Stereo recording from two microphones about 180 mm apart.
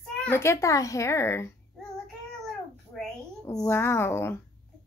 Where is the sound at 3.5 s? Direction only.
15° left (ahead or behind).